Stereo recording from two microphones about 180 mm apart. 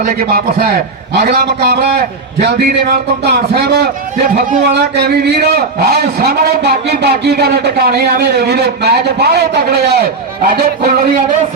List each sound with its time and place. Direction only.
0.0 s a man's voice: 55° right (ahead or behind)